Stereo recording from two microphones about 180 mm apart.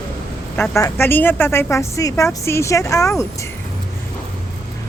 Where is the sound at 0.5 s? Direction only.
5° left (ahead or behind).